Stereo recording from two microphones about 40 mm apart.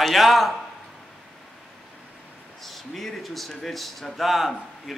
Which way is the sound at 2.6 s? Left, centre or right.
Centre.